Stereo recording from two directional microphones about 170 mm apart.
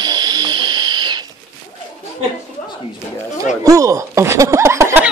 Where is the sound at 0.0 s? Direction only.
25° right (ahead or behind).